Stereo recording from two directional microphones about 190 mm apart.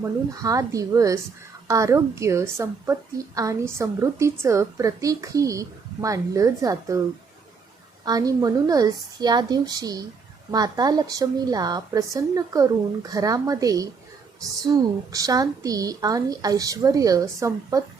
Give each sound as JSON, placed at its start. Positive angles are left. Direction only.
{"t": 0.0, "sound": "a woman's voice", "side_deg": -20}
{"t": 8.0, "sound": "a woman's voice", "side_deg": -20}